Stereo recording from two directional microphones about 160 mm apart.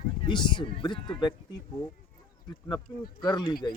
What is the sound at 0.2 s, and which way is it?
Speech, 30° left (ahead or behind).